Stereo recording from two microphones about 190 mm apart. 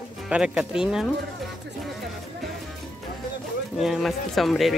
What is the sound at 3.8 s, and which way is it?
Speech, centre (ahead or behind).